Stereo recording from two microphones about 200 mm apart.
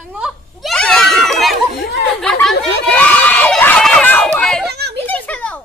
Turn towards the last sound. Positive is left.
turn(degrees=5)  # may be behind; listen again after turning